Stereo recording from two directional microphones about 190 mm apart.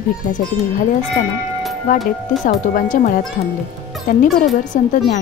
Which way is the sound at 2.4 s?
45° left (ahead or behind).